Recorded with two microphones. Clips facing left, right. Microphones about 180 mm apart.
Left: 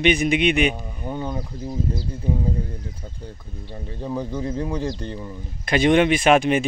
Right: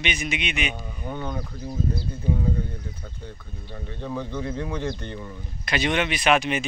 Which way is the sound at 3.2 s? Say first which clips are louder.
Left 3 dB; 35° left (ahead or behind).